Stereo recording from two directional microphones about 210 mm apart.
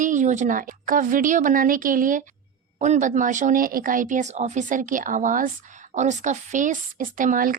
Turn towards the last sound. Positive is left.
turn(degrees=-40)  # may be behind; listen again after turning